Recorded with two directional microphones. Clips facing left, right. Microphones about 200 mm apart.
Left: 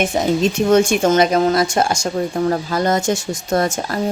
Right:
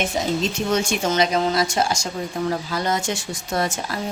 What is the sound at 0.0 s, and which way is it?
Speech, 50° left (ahead or behind).